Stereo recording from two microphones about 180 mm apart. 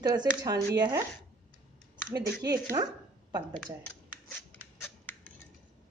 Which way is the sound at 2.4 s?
20° right (ahead or behind).